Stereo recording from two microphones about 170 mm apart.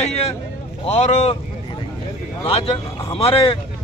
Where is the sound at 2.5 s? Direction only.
30° left (ahead or behind).